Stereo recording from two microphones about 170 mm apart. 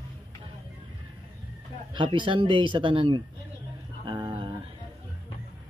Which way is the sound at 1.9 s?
30° right (ahead or behind).